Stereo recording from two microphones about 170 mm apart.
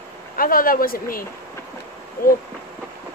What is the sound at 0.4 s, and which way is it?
Speech, 55° left (ahead or behind).